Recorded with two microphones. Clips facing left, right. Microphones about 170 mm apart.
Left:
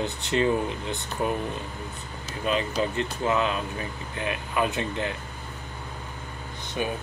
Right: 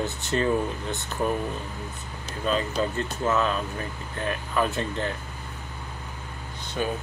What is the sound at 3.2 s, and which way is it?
Speech, 15° left (ahead or behind).